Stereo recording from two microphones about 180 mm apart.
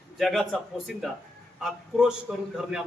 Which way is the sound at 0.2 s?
Centre (ahead or behind).